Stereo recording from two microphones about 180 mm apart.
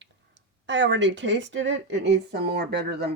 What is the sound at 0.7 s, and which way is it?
A woman's voice, 90° right.